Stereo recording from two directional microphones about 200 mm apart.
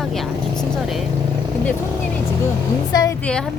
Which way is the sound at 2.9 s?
20° left (ahead or behind).